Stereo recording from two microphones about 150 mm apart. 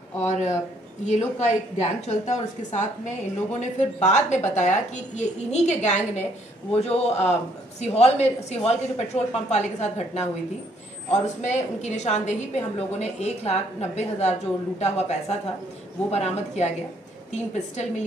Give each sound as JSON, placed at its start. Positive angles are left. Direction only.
{"t": 0.3, "sound": "a woman's voice", "side_deg": 50}